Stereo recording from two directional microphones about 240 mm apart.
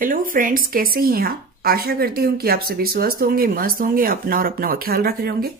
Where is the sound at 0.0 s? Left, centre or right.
Right.